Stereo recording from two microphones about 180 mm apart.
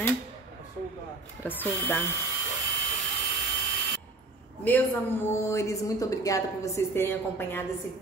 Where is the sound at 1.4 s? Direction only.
10° left (ahead or behind).